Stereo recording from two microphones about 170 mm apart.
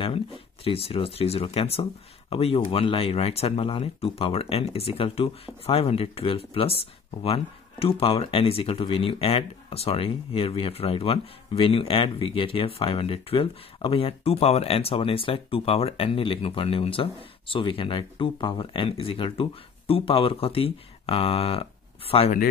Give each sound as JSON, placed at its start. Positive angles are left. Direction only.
{"t": 0.7, "sound": "speech", "side_deg": 35}